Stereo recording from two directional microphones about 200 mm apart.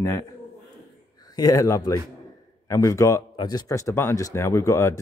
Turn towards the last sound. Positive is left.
turn(degrees=15)  # may be behind; listen again after turning